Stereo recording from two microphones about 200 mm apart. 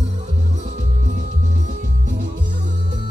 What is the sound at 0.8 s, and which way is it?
Music, 35° right (ahead or behind).